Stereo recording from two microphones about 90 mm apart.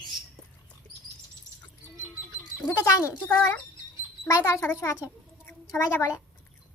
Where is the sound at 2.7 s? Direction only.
35° left (ahead or behind).